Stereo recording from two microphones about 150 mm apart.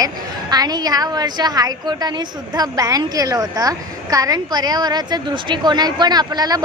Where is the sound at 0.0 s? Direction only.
25° right (ahead or behind).